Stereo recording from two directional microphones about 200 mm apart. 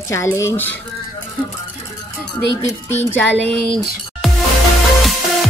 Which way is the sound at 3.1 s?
10° left (ahead or behind).